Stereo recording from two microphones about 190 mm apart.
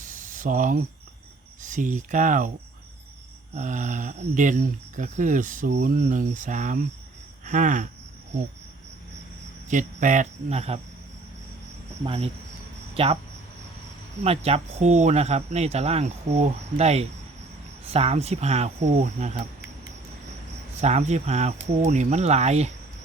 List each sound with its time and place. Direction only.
0.0 s a sound: 45° right (ahead or behind)
1.6 s speech: 40° right (ahead or behind)
3.5 s speech: 40° right (ahead or behind)
9.6 s speech: 40° right (ahead or behind)
12.0 s speech: 30° right (ahead or behind)
14.3 s speech: 30° right (ahead or behind)
20.8 s speech: 35° right (ahead or behind)